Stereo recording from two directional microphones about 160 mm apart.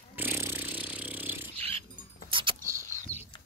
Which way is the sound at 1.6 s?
40° right (ahead or behind).